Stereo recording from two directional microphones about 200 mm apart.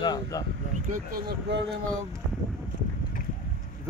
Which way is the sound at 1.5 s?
55° right (ahead or behind).